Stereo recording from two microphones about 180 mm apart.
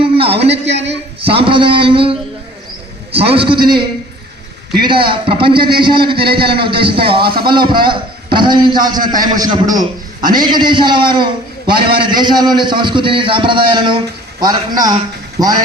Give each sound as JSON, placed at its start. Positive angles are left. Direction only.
{"t": 0.6, "sound": "a man's voice", "side_deg": -80}
{"t": 1.2, "sound": "a man's voice", "side_deg": -30}
{"t": 6.1, "sound": "a man's voice", "side_deg": -60}
{"t": 6.5, "sound": "a man's voice", "side_deg": -30}